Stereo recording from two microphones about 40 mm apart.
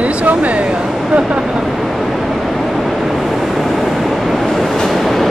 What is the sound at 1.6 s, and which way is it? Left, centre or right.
Vehicle, centre.